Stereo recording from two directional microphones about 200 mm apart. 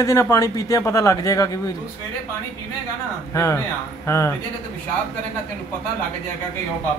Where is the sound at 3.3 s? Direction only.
15° left (ahead or behind).